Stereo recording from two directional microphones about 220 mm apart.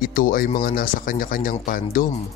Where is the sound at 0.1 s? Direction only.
40° left (ahead or behind).